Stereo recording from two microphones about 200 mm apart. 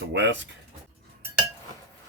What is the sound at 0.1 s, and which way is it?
Speech, 65° right (ahead or behind).